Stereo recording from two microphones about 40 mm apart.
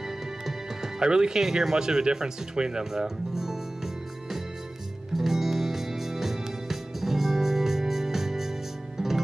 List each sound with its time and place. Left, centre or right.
0.5 s music: centre
1.4 s speech: centre
2.8 s music: centre